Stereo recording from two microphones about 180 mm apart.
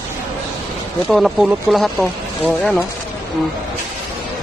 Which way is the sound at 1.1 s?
Centre (ahead or behind).